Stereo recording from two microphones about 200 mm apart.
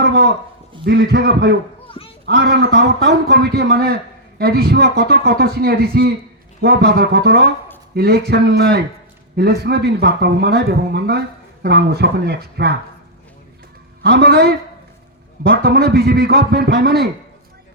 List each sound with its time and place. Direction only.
0.0 s a sound: 55° right (ahead or behind)
0.9 s speech: 55° right (ahead or behind)
14.0 s speech: 55° right (ahead or behind)